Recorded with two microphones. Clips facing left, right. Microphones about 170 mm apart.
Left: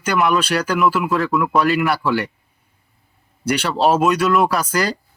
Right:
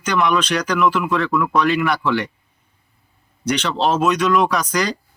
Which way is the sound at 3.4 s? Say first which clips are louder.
Left 2 dB; 10° left (ahead or behind).